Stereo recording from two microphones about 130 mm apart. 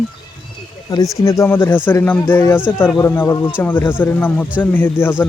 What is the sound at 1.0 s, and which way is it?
Speech, 25° left (ahead or behind).